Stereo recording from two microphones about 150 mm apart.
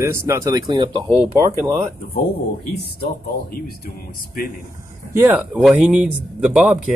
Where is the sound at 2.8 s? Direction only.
85° left.